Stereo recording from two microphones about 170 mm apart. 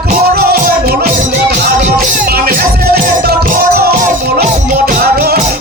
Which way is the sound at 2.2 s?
65° right (ahead or behind).